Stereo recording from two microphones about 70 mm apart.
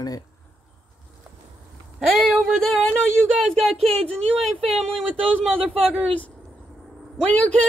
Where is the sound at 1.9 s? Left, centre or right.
Centre.